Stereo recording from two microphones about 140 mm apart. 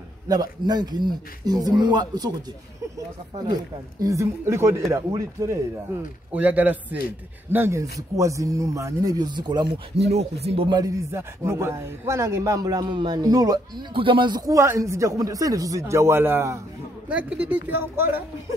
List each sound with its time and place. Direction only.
0.3 s a man's voice: 30° right (ahead or behind)
4.0 s a man's voice: 20° right (ahead or behind)
10.0 s speech: 50° right (ahead or behind)
10.8 s a man's voice: 20° right (ahead or behind)
13.9 s a man's voice: 35° right (ahead or behind); by 18.2 s 15° right (ahead or behind)